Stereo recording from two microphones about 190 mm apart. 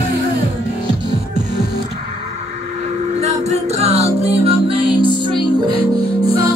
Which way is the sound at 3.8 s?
35° right (ahead or behind).